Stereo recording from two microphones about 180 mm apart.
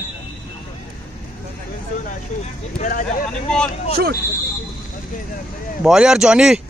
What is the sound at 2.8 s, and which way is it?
Speech, 45° left (ahead or behind).